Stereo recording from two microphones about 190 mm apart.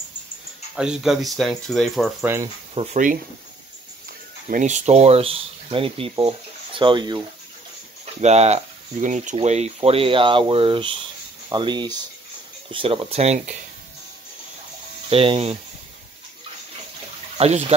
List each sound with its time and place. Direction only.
0.7 s speech: 5° right (ahead or behind)
2.7 s speech: 35° right (ahead or behind)
4.5 s speech: 40° right (ahead or behind); by 7.2 s 25° right (ahead or behind)
8.0 s speech: 35° right (ahead or behind)
15.0 s speech: 30° right (ahead or behind)
17.4 s speech: 35° right (ahead or behind)